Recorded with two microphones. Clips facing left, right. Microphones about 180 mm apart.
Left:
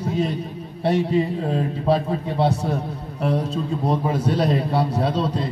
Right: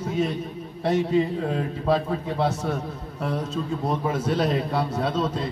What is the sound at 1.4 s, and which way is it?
A man's voice, 30° left (ahead or behind).